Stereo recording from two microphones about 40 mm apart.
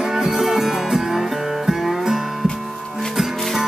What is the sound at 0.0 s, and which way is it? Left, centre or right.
Music, centre.